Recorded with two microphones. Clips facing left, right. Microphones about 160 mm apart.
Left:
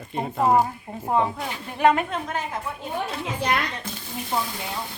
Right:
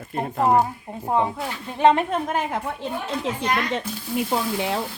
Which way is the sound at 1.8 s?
30° right (ahead or behind).